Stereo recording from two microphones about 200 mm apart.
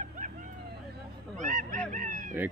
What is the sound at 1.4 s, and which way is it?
Honk, 40° right (ahead or behind).